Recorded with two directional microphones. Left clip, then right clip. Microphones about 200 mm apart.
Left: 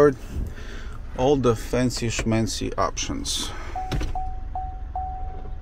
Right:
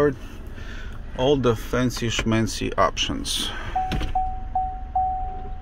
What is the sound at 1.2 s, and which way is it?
Speech, 5° left (ahead or behind).